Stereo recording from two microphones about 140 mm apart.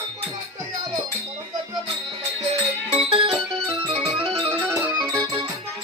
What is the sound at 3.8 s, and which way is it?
Music, 40° right (ahead or behind).